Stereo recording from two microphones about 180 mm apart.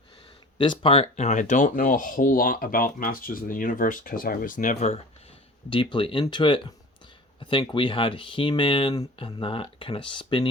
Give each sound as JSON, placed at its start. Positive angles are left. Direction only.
{"t": 0.6, "sound": "speech", "side_deg": 30}
{"t": 5.7, "sound": "speech", "side_deg": 30}